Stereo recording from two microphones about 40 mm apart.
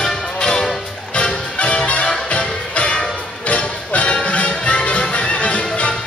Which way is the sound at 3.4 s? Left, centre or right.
Left.